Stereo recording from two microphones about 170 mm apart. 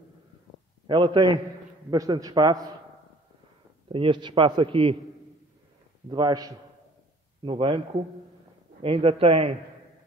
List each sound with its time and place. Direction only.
0.8 s a man's voice: 25° right (ahead or behind)
3.9 s a man's voice: 30° right (ahead or behind)
6.0 s a man's voice: 25° right (ahead or behind)
8.8 s a man's voice: 35° right (ahead or behind)